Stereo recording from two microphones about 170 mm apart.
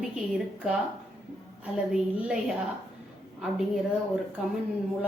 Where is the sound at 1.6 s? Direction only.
5° right (ahead or behind).